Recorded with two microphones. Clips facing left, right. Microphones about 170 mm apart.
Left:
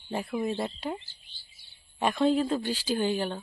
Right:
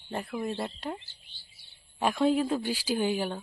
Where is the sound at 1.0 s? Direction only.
65° right (ahead or behind).